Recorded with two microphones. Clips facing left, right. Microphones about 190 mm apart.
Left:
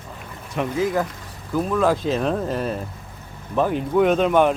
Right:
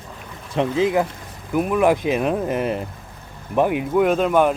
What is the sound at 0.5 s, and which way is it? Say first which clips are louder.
Speech: right 3 dB; 25° right (ahead or behind).